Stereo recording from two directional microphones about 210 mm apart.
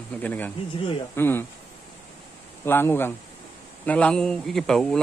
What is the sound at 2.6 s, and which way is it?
Speech, 10° left (ahead or behind).